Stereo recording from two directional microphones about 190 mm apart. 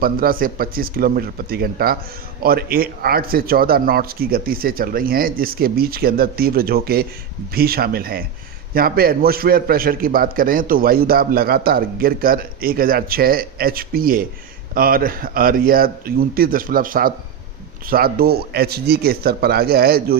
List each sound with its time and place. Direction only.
0.0 s a man's voice: 50° right (ahead or behind)